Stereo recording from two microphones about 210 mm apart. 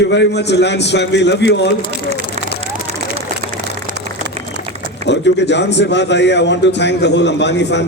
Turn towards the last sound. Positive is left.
turn(degrees=55)  # may be behind; listen again after turning